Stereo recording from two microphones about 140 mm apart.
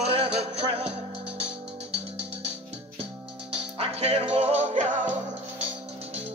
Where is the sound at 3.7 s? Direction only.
50° right (ahead or behind).